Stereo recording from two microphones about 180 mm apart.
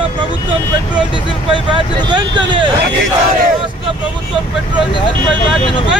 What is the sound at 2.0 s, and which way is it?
Speech, 25° right (ahead or behind).